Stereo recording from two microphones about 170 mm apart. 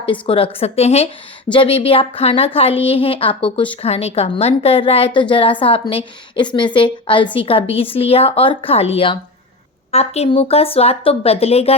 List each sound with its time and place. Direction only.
0.0 s a woman's voice: 30° left (ahead or behind)